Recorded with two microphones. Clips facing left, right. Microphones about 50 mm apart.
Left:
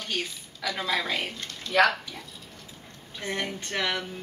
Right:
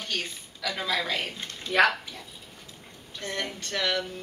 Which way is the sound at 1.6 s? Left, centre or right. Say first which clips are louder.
Even; centre.